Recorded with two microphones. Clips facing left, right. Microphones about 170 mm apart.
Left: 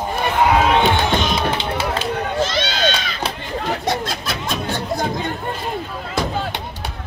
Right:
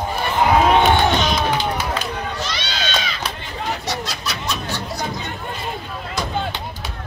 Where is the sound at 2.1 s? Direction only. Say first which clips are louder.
Left 6 dB; 50° left (ahead or behind).